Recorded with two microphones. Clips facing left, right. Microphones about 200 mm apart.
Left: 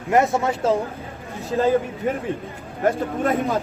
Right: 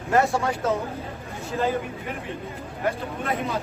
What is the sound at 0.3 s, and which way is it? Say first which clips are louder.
Speech: left 3 dB; 25° left (ahead or behind).